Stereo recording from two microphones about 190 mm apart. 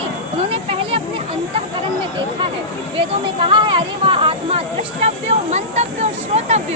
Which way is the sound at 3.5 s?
25° right (ahead or behind).